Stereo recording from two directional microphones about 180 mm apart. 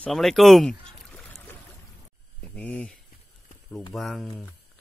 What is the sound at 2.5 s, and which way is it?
Speech, 10° left (ahead or behind).